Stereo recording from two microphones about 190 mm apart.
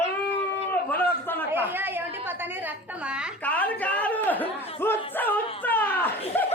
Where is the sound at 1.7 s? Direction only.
10° right (ahead or behind).